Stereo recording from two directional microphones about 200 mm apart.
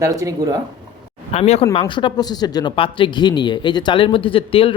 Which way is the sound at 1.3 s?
30° left (ahead or behind).